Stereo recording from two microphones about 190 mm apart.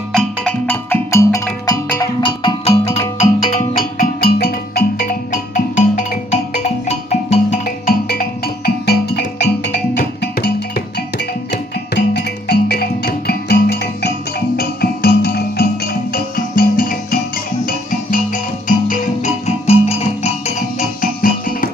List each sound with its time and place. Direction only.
0.1 s music: 5° left (ahead or behind); by 10.5 s 60° left (ahead or behind)
11.5 s music: 60° left (ahead or behind); by 20.5 s 35° left (ahead or behind)
21.0 s music: 45° left (ahead or behind)